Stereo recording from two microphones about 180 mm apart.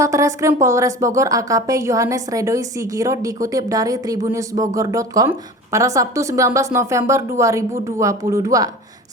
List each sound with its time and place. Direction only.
0.0 s a woman's voice: 15° right (ahead or behind)